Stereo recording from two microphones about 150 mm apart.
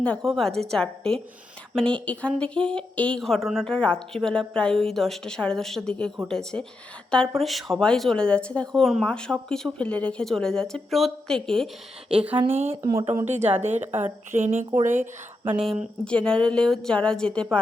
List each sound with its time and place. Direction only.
0.0 s speech: 5° left (ahead or behind)
12.1 s speech: 10° right (ahead or behind)
12.4 s a woman's voice: 40° right (ahead or behind)
15.4 s speech: 5° right (ahead or behind)